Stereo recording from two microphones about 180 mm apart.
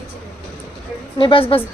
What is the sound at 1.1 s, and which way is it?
Speech, 30° left (ahead or behind).